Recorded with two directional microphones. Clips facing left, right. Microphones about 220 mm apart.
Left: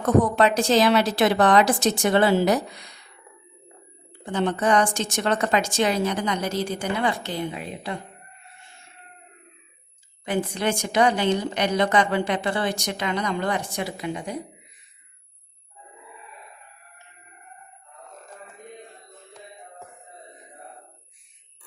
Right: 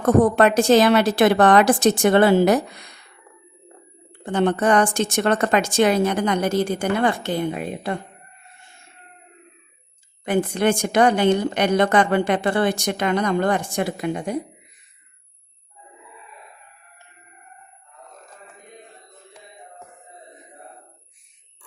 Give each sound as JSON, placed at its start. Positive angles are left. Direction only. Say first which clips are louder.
{"t": 0.0, "sound": "a woman's voice", "louder": "right 4 dB", "side_deg": -50}
{"t": 4.3, "sound": "a woman's voice", "louder": "right 4 dB", "side_deg": -55}
{"t": 10.2, "sound": "a woman's voice", "louder": "right 5 dB", "side_deg": -55}